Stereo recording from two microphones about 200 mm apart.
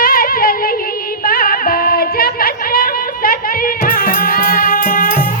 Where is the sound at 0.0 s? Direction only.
45° left (ahead or behind).